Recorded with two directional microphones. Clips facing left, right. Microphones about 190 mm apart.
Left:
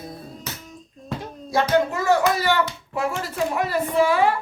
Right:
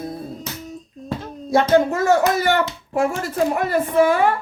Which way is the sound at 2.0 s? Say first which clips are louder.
Right 3 dB; 50° right (ahead or behind).